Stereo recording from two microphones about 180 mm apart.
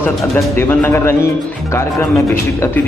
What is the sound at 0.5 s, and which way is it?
Speech, 15° left (ahead or behind).